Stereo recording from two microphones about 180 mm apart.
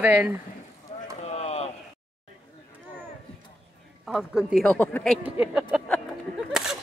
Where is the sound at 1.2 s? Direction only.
35° left (ahead or behind).